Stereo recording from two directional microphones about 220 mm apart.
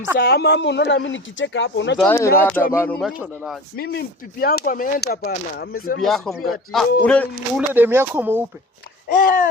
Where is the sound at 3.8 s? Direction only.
45° left (ahead or behind).